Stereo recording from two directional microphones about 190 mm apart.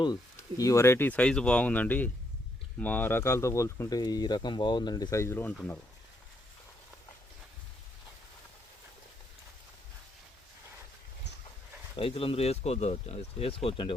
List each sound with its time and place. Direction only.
0.0 s speech: 20° left (ahead or behind)
11.9 s speech: 30° left (ahead or behind)